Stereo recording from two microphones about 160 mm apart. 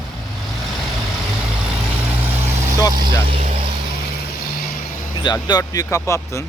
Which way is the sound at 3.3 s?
40° right (ahead or behind).